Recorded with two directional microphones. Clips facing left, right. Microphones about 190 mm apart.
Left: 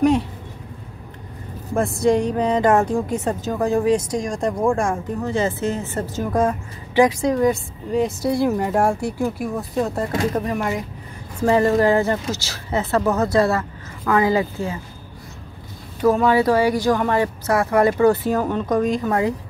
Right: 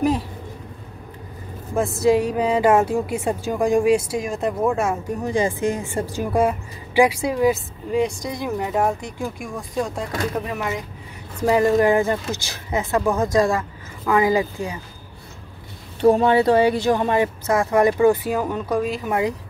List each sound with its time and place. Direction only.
1.8 s a woman's voice: centre (ahead or behind)
11.4 s a woman's voice: 15° right (ahead or behind)
16.0 s speech: 30° right (ahead or behind)